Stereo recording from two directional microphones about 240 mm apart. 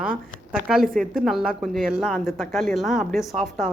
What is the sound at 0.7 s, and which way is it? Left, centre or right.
Speech, centre.